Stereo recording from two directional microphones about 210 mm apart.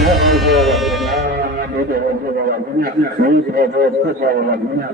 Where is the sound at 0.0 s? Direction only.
Centre (ahead or behind).